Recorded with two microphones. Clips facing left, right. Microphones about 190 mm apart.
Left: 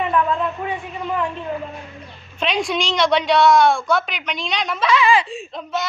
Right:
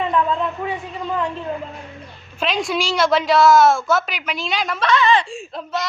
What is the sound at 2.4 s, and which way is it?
A woman's voice, centre (ahead or behind).